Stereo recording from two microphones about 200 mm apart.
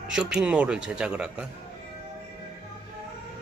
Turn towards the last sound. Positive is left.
turn(degrees=-5)  # may be behind; listen again after turning